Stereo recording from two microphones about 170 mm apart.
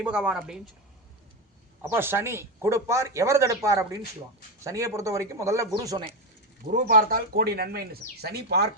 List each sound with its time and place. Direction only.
0.0 s speech: 5° right (ahead or behind)
1.8 s speech: 15° right (ahead or behind)
6.8 s speech: 60° right (ahead or behind)